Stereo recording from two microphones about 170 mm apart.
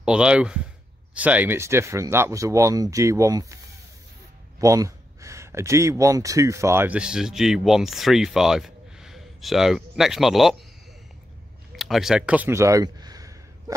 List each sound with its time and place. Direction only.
0.0 s speech: 5° right (ahead or behind)
4.6 s speech: 20° right (ahead or behind); by 10.5 s centre (ahead or behind)
11.7 s a sound: centre (ahead or behind); by 13.7 s 20° right (ahead or behind)